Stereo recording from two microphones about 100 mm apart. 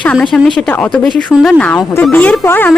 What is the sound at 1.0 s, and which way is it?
Speech, centre (ahead or behind).